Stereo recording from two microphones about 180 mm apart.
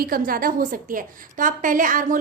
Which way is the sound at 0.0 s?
55° right (ahead or behind).